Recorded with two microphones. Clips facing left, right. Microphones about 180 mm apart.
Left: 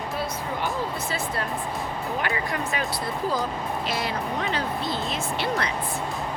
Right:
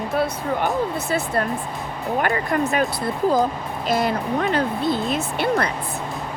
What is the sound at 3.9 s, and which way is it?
Speech, 50° right (ahead or behind).